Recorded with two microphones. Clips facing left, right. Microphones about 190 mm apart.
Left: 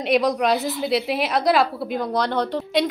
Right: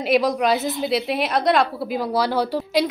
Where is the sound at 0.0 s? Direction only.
Centre (ahead or behind).